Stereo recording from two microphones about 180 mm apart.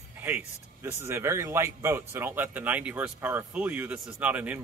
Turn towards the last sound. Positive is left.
turn(degrees=-10)  # may be behind; listen again after turning